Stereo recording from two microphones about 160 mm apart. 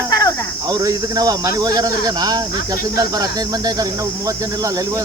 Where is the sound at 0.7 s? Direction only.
20° right (ahead or behind).